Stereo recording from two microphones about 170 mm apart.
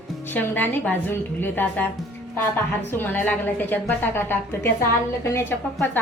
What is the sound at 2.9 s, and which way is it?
A woman's voice, 10° left (ahead or behind).